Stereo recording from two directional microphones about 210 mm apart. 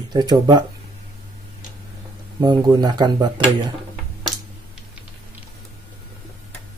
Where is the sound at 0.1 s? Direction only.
20° right (ahead or behind).